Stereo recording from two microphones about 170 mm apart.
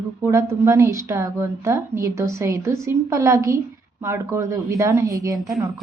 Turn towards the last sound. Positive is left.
turn(degrees=-20)  # may be behind; listen again after turning